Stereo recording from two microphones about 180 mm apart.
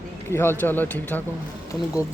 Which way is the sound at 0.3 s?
15° left (ahead or behind).